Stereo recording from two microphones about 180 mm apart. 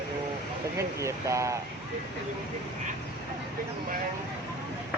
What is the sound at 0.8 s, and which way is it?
Speech, 15° right (ahead or behind).